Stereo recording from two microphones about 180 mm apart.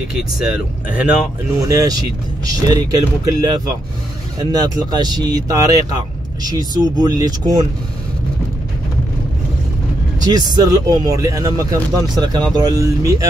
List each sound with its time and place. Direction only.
0.1 s speech: 5° right (ahead or behind)
1.6 s speech: 20° right (ahead or behind)
10.2 s speech: 20° right (ahead or behind)